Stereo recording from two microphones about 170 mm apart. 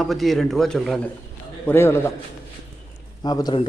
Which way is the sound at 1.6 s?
15° left (ahead or behind).